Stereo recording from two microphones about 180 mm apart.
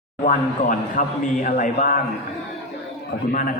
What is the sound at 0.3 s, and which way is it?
A man's voice, 45° left (ahead or behind).